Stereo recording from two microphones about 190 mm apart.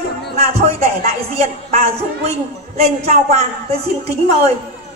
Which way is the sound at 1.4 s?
35° right (ahead or behind).